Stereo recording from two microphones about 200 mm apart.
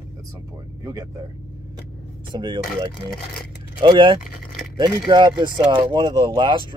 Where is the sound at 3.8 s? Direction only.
25° right (ahead or behind).